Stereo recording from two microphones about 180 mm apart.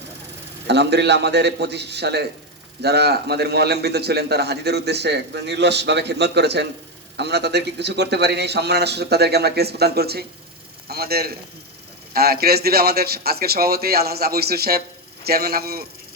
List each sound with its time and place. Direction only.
0.7 s a man's voice: 70° right (ahead or behind)